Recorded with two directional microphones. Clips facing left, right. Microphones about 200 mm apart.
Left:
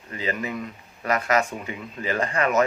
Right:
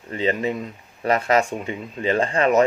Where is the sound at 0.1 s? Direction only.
25° right (ahead or behind).